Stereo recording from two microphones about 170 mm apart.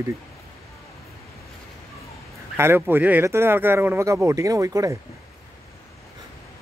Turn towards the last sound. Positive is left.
turn(degrees=-20)  # may be behind; listen again after turning